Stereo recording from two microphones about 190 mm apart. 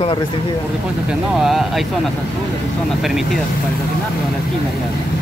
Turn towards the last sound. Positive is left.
turn(degrees=0)  # may be behind; listen again after turning